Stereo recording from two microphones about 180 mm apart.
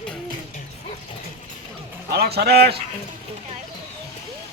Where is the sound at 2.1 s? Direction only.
60° right (ahead or behind).